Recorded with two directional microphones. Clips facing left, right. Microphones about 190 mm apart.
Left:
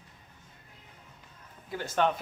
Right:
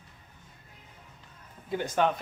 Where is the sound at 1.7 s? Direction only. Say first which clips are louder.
Right 5 dB; 25° right (ahead or behind).